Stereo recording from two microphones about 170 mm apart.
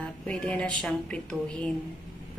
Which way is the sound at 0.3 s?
5° left (ahead or behind).